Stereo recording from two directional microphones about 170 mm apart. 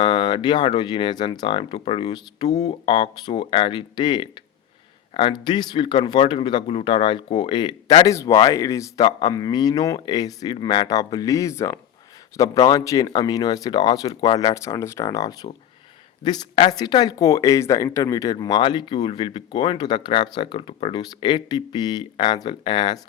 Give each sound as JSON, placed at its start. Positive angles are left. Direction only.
{"t": 0.0, "sound": "speech", "side_deg": 25}